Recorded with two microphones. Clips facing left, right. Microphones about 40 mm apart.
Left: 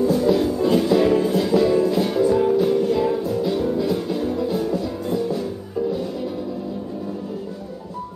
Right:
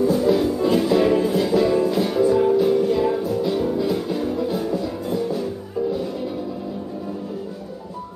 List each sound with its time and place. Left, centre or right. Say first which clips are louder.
0.0 s music: even; centre